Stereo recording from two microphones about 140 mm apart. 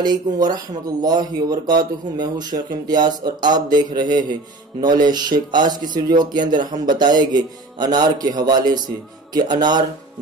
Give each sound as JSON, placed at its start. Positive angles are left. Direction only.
{"t": 0.0, "sound": "speech", "side_deg": -30}